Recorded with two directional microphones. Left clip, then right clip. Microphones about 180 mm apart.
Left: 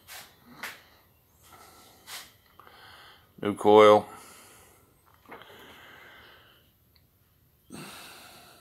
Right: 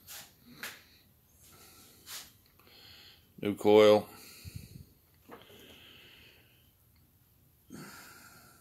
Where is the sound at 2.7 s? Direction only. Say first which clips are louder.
Left 3 dB; 15° right (ahead or behind).